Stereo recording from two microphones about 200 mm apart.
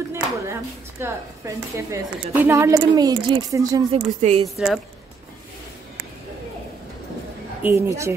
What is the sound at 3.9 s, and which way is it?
Speech, 30° right (ahead or behind).